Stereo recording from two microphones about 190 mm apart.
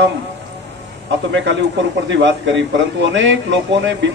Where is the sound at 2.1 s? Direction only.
70° right (ahead or behind).